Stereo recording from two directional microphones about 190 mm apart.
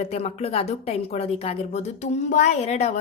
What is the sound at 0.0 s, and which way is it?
A woman's voice, 35° left (ahead or behind).